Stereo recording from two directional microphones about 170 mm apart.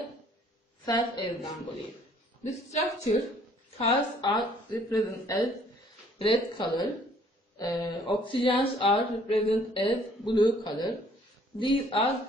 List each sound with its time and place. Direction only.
0.8 s speech: 25° left (ahead or behind)
2.4 s a woman's voice: 40° left (ahead or behind)
3.7 s speech: 30° left (ahead or behind)
6.1 s a woman's voice: 30° left (ahead or behind)